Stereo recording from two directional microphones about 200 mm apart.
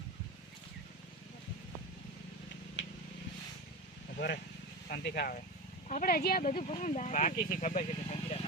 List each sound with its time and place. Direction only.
4.9 s speech: 50° left (ahead or behind)
6.5 s speech: 35° left (ahead or behind)